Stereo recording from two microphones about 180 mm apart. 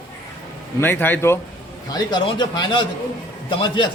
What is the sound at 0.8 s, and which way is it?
Speech, 10° left (ahead or behind).